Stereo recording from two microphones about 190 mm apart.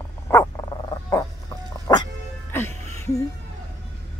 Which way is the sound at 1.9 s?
20° left (ahead or behind).